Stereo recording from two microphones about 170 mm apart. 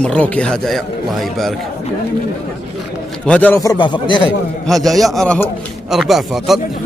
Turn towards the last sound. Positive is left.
turn(degrees=0)  # may be behind; listen again after turning